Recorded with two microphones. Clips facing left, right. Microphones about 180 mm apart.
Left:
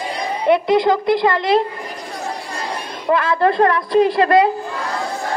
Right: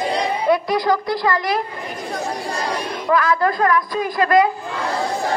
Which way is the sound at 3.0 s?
25° left (ahead or behind).